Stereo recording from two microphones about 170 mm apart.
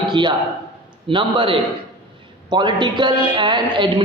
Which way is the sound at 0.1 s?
25° right (ahead or behind).